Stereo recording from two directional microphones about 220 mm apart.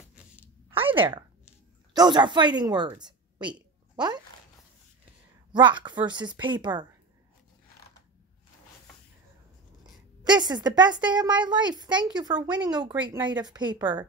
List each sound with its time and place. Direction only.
0.7 s a sound: 25° right (ahead or behind)
2.0 s a woman's voice: 20° right (ahead or behind)
5.5 s a woman's voice: 20° right (ahead or behind)
10.2 s a woman's voice: 20° right (ahead or behind)
12.4 s speech: 5° right (ahead or behind)
12.7 s a woman's voice: 20° right (ahead or behind)